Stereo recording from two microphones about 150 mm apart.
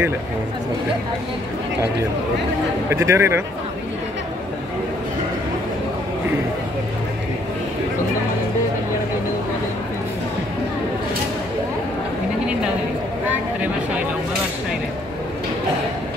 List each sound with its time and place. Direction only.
2.9 s speech: 15° right (ahead or behind)